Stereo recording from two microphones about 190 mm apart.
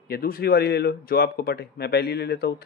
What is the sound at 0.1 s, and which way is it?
Speech, 50° left (ahead or behind).